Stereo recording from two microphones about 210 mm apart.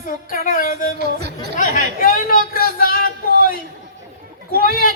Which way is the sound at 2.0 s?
40° left (ahead or behind).